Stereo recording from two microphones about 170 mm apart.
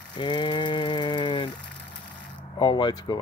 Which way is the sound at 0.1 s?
25° left (ahead or behind).